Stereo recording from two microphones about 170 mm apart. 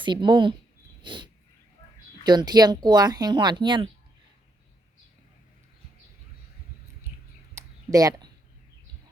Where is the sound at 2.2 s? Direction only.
25° right (ahead or behind).